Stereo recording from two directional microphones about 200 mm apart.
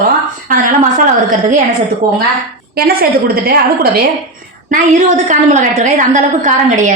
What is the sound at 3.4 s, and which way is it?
Speech, 50° right (ahead or behind).